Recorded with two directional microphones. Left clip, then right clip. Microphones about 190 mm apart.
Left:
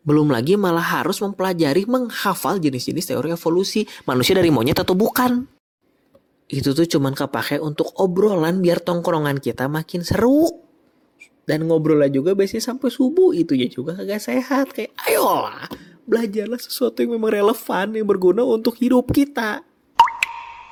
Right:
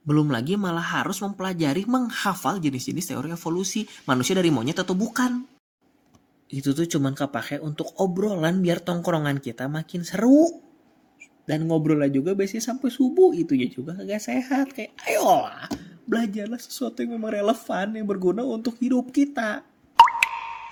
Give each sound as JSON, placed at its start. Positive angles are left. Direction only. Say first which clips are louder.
{"t": 0.1, "sound": "speech", "louder": "left 7 dB", "side_deg": 40}
{"t": 6.5, "sound": "speech", "louder": "left 7 dB", "side_deg": 35}
{"t": 7.9, "sound": "speech", "louder": "left 7 dB", "side_deg": 25}
{"t": 20.0, "sound": "plop", "louder": "even", "side_deg": 0}